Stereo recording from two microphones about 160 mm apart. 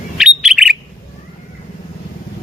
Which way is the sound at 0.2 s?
5° right (ahead or behind).